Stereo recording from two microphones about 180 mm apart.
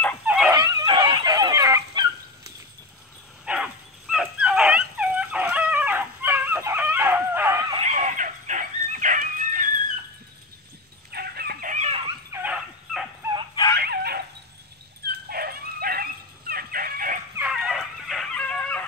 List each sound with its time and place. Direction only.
0.3 s dog: 5° right (ahead or behind)
0.6 s dog: 20° right (ahead or behind)
3.4 s dog: 5° right (ahead or behind)
7.7 s dog: 40° right (ahead or behind)
11.1 s chicken: 60° right (ahead or behind)
11.7 s dog: 40° right (ahead or behind)
12.3 s dog: 15° right (ahead or behind)
13.7 s dog: 60° right (ahead or behind)
17.4 s dog: 5° right (ahead or behind)